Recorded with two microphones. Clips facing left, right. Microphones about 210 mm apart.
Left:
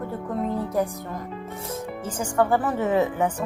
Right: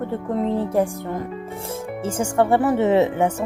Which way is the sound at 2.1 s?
25° right (ahead or behind).